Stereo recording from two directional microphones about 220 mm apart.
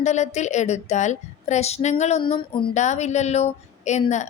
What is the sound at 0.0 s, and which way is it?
A woman's voice, 30° left (ahead or behind).